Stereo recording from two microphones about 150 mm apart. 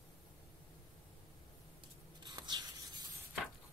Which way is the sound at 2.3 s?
30° right (ahead or behind).